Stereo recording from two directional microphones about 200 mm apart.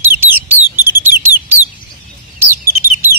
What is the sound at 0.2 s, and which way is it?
Bird, 10° right (ahead or behind).